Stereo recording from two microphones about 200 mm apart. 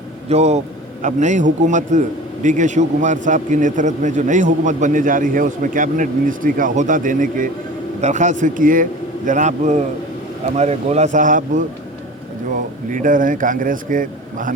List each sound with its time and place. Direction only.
0.3 s a man's voice: 30° right (ahead or behind)